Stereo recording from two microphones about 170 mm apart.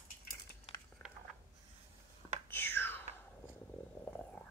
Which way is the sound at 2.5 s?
10° left (ahead or behind).